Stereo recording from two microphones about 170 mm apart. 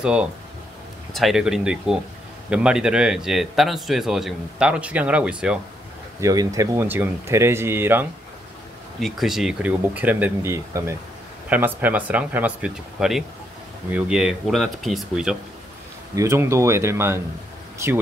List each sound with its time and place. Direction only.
0.0 s a man's voice: 5° right (ahead or behind)
6.2 s speech: 20° right (ahead or behind)
9.0 s a man's voice: centre (ahead or behind)
16.2 s speech: 15° right (ahead or behind)